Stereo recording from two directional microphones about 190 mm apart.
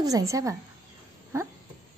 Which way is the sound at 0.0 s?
15° right (ahead or behind).